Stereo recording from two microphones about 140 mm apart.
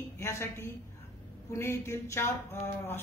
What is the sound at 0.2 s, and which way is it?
A woman's voice, 20° left (ahead or behind).